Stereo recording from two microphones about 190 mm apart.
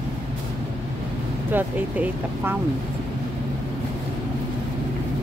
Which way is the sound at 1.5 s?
10° right (ahead or behind).